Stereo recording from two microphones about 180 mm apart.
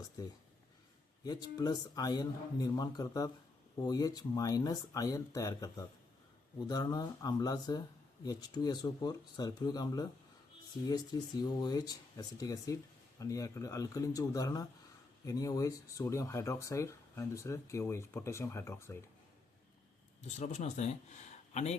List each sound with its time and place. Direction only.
0.2 s speech: 20° left (ahead or behind)
20.2 s speech: 40° left (ahead or behind)